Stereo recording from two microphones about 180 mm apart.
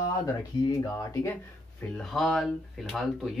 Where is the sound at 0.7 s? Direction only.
20° left (ahead or behind).